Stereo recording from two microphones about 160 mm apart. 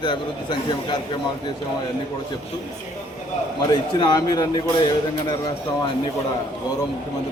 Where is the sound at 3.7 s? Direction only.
25° left (ahead or behind).